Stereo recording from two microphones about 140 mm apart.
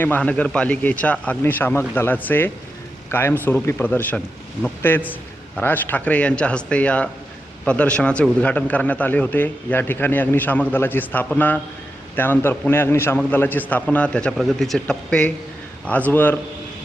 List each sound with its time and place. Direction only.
0.0 s a man's voice: 10° left (ahead or behind)